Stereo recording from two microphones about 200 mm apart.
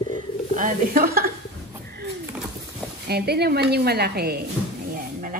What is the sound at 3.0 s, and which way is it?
Speech, 55° right (ahead or behind).